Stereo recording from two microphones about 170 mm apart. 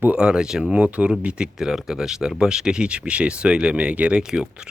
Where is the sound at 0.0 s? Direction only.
10° right (ahead or behind).